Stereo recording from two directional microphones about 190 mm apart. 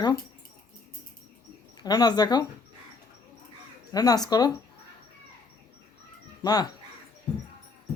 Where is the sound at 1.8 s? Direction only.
20° left (ahead or behind).